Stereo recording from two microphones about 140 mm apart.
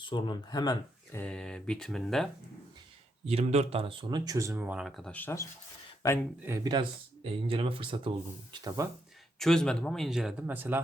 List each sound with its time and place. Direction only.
0.1 s speech: 30° left (ahead or behind)
1.1 s speech: 10° left (ahead or behind)
3.2 s speech: 50° right (ahead or behind); by 5.1 s centre (ahead or behind)
5.1 s speech: 15° left (ahead or behind)
6.5 s speech: 15° right (ahead or behind)
7.4 s speech: 40° right (ahead or behind)
8.6 s speech: 25° right (ahead or behind)
9.4 s speech: 5° left (ahead or behind); by 10.8 s 15° right (ahead or behind)